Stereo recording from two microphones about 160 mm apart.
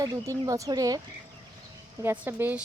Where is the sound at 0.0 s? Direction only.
20° right (ahead or behind).